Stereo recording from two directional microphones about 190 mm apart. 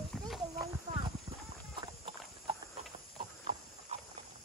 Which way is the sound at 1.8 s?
25° right (ahead or behind).